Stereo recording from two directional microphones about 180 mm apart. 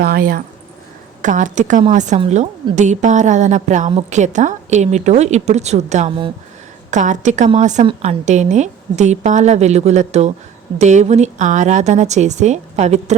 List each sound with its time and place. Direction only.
0.0 s speech: 55° right (ahead or behind)
1.2 s a woman's voice: 45° right (ahead or behind)